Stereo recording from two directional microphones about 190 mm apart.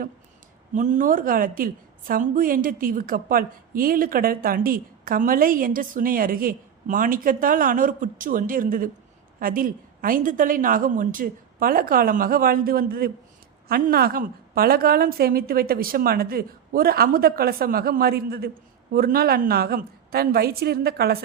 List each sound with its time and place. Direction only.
0.7 s a woman's voice: 40° right (ahead or behind)